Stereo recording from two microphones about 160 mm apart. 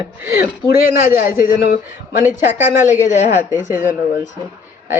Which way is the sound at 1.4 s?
60° left (ahead or behind).